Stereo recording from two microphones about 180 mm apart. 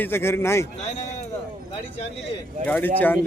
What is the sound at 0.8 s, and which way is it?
Speech, 40° left (ahead or behind).